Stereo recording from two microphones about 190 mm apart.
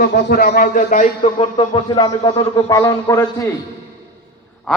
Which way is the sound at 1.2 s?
30° left (ahead or behind).